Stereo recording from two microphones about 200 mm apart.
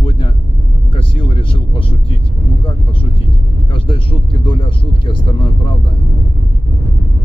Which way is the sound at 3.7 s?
25° left (ahead or behind).